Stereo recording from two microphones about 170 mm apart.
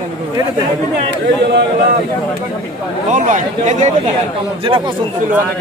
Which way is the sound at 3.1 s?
45° right (ahead or behind).